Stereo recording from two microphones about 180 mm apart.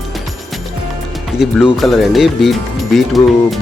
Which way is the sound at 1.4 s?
Centre (ahead or behind).